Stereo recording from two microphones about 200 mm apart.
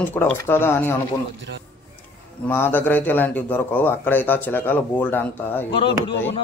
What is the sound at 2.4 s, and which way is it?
A man's voice, 10° left (ahead or behind).